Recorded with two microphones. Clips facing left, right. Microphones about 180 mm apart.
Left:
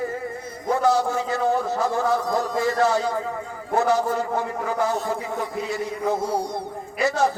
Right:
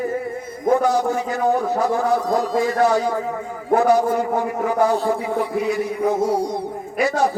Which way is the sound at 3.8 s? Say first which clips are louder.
Right 3 dB; 15° right (ahead or behind).